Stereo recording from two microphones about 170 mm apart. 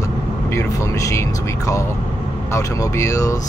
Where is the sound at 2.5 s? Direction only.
15° left (ahead or behind).